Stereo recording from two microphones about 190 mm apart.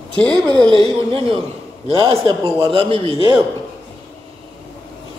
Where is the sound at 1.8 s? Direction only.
30° right (ahead or behind).